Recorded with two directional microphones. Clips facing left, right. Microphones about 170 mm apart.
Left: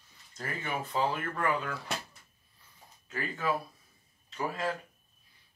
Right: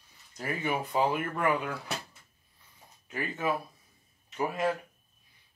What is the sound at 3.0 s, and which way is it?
Speech, 20° right (ahead or behind).